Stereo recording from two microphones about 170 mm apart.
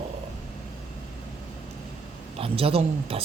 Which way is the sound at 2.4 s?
35° right (ahead or behind).